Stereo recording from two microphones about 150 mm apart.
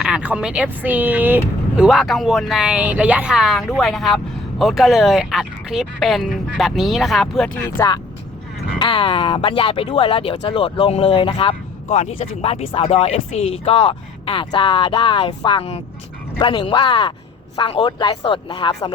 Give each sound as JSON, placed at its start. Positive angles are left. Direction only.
{"t": 0.0, "sound": "speech", "side_deg": -5}
{"t": 8.8, "sound": "speech", "side_deg": 35}
{"t": 11.9, "sound": "speech", "side_deg": 45}